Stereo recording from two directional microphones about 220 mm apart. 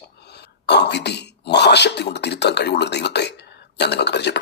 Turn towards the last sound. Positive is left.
turn(degrees=50)  # may be behind; listen again after turning